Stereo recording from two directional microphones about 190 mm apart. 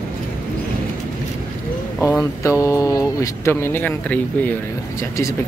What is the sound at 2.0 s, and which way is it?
Speech, 10° left (ahead or behind).